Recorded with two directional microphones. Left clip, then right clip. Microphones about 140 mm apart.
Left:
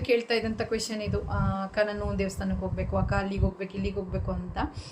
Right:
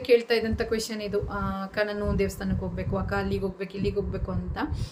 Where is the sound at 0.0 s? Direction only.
5° right (ahead or behind).